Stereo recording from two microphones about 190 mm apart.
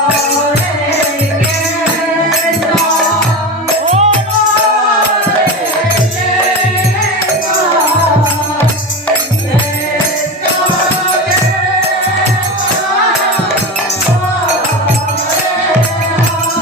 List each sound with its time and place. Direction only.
3.8 s music: 35° right (ahead or behind)